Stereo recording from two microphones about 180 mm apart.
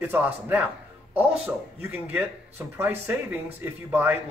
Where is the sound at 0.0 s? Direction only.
10° right (ahead or behind).